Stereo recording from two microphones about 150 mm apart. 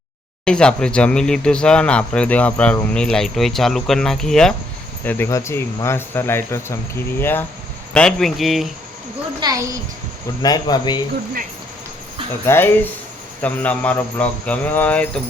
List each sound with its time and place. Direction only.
0.4 s speech: 5° left (ahead or behind)
5.0 s speech: 15° left (ahead or behind)
7.9 s speech: 5° left (ahead or behind)
9.4 s a woman's voice: 25° right (ahead or behind)
10.4 s speech: 25° left (ahead or behind)
12.5 s speech: 15° left (ahead or behind)